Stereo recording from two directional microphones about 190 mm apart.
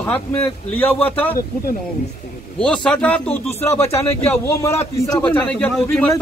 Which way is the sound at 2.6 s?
5° left (ahead or behind).